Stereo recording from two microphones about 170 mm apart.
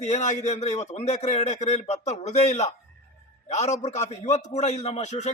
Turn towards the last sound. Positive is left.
turn(degrees=45)  # may be behind; listen again after turning